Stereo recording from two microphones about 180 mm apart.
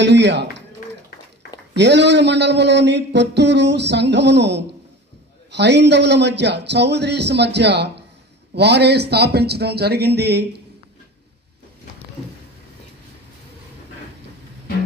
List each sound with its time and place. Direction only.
0.0 s speech: 75° right (ahead or behind)
1.8 s a man's voice: 70° right (ahead or behind)